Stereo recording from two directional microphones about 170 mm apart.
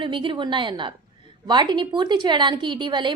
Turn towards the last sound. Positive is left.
turn(degrees=-25)  # may be behind; listen again after turning